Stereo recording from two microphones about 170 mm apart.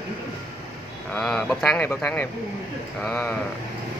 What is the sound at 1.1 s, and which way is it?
Speech, 5° left (ahead or behind).